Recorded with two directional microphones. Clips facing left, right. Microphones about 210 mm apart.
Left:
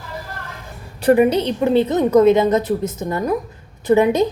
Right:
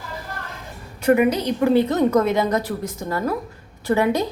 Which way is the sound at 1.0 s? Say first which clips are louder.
Left 3 dB; 30° left (ahead or behind).